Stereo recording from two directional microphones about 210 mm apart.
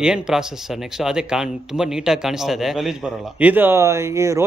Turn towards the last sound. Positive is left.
turn(degrees=-15)  # may be behind; listen again after turning